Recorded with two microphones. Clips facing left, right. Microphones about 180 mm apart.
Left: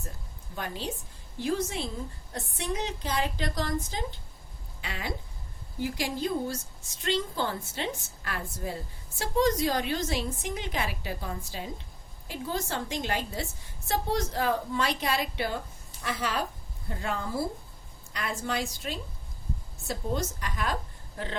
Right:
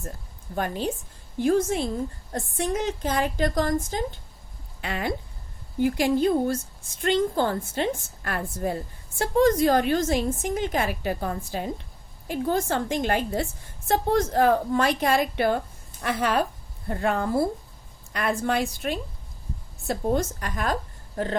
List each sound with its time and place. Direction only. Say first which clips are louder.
0.5 s a woman's voice: right 8 dB; 50° right (ahead or behind)